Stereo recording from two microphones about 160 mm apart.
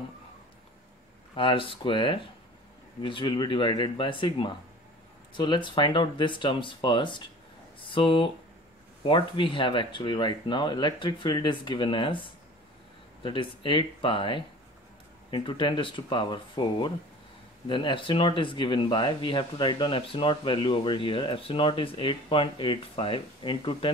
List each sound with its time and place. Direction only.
1.3 s speech: 30° left (ahead or behind)